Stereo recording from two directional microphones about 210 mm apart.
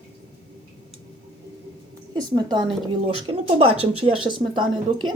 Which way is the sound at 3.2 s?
25° right (ahead or behind).